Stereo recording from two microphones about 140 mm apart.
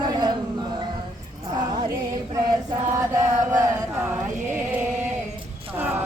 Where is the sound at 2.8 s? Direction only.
20° right (ahead or behind).